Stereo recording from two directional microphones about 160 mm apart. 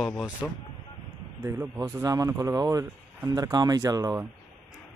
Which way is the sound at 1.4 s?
20° right (ahead or behind).